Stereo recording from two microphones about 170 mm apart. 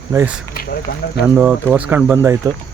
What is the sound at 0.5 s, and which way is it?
Speech, 65° left (ahead or behind).